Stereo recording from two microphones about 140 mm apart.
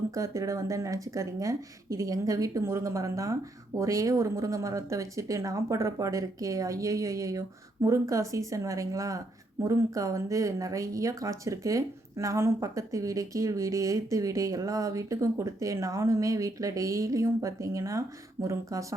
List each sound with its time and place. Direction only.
0.1 s speech: 20° right (ahead or behind)